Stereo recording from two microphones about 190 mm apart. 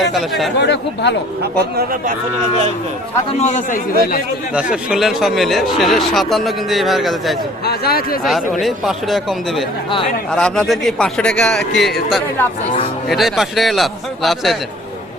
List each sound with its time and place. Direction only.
0.0 s speech: centre (ahead or behind)
0.6 s speech: 65° left (ahead or behind)
1.7 s speech: 50° right (ahead or behind)
3.3 s a man's voice: 40° left (ahead or behind)
4.5 s speech: 5° right (ahead or behind)
7.6 s speech: 55° left (ahead or behind)
8.6 s speech: centre (ahead or behind)